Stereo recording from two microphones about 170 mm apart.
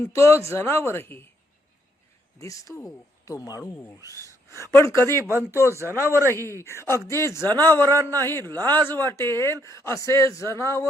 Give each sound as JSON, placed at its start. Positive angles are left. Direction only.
{"t": 0.0, "sound": "a man's voice", "side_deg": 15}
{"t": 2.4, "sound": "a man's voice", "side_deg": 20}
{"t": 5.3, "sound": "speech", "side_deg": -15}
{"t": 6.1, "sound": "a man's voice", "side_deg": 15}